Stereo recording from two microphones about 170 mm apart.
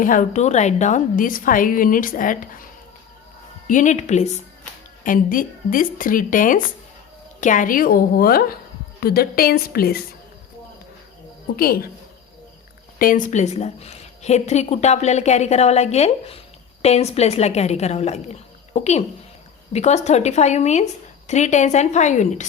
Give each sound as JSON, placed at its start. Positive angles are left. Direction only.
{"t": 0.0, "sound": "a woman's voice", "side_deg": 50}
{"t": 3.7, "sound": "a woman's voice", "side_deg": 45}
{"t": 11.5, "sound": "a woman's voice", "side_deg": 65}
{"t": 13.0, "sound": "a woman's voice", "side_deg": 50}